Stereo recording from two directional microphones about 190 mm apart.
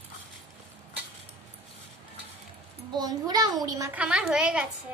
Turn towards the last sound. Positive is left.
turn(degrees=-5)  # may be behind; listen again after turning